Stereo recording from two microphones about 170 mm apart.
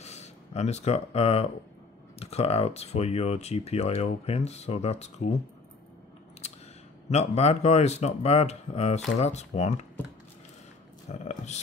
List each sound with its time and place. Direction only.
0.0 s speech: 40° left (ahead or behind)
7.1 s speech: 40° left (ahead or behind)
11.1 s a sound: 40° left (ahead or behind)